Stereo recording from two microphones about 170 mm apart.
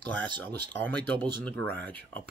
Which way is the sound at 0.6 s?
10° left (ahead or behind).